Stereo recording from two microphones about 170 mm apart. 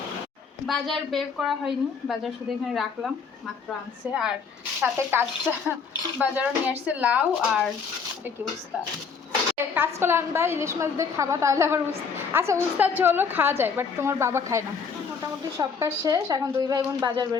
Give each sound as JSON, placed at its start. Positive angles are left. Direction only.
{"t": 0.7, "sound": "a woman's voice", "side_deg": 0}
{"t": 9.7, "sound": "a woman's voice", "side_deg": -15}